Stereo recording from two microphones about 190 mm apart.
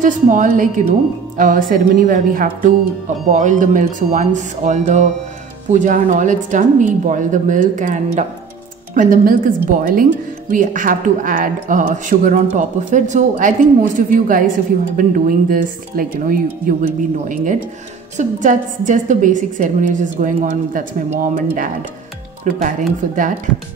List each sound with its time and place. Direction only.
0.0 s a woman's voice: 40° right (ahead or behind)